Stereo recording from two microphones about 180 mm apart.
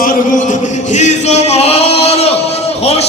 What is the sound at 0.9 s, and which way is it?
Singing, 40° left (ahead or behind).